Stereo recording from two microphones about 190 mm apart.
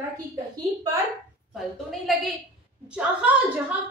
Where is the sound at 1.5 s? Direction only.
Centre (ahead or behind).